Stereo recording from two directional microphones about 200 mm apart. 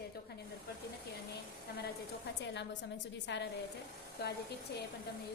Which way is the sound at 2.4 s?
60° left (ahead or behind).